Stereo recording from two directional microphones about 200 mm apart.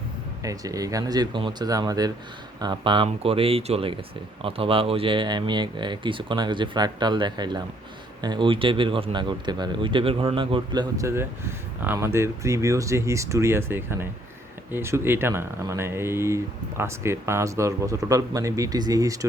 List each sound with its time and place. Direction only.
0.4 s speech: 15° right (ahead or behind)